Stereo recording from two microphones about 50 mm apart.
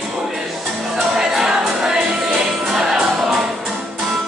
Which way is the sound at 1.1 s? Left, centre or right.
Centre.